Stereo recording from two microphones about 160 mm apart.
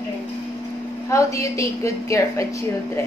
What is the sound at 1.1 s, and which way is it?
A woman's voice, 20° left (ahead or behind).